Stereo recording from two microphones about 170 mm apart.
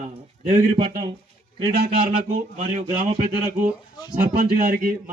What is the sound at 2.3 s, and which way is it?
Speech, 45° right (ahead or behind).